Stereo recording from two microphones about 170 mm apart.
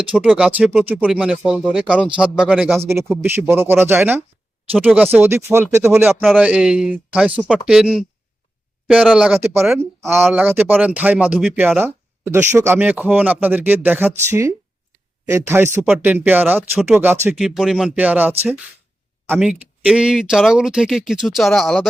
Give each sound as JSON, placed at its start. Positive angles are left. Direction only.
{"t": 0.0, "sound": "speech", "side_deg": -5}
{"t": 9.4, "sound": "speech", "side_deg": -15}